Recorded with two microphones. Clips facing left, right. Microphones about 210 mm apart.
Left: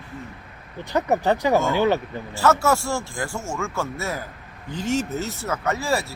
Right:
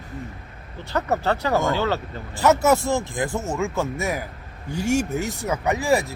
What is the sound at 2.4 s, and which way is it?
Speech, 15° right (ahead or behind).